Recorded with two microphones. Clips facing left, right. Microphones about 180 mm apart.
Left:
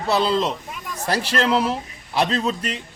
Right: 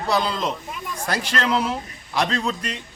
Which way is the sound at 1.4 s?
10° left (ahead or behind).